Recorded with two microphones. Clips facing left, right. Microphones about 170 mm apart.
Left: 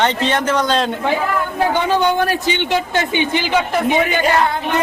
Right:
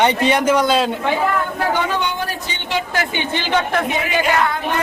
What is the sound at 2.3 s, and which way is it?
Speech, 80° left.